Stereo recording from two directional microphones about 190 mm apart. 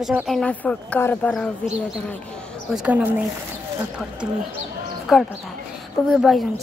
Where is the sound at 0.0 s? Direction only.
Centre (ahead or behind).